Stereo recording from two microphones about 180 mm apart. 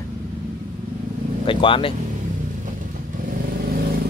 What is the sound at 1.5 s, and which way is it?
Speech, 30° left (ahead or behind).